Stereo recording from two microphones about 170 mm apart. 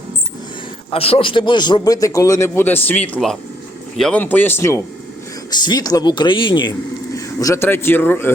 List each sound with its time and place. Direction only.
0.9 s speech: 35° left (ahead or behind); by 4.8 s 15° left (ahead or behind)
5.5 s speech: 25° left (ahead or behind)